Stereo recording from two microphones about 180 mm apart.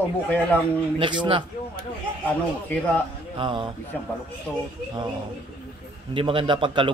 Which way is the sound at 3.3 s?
30° right (ahead or behind).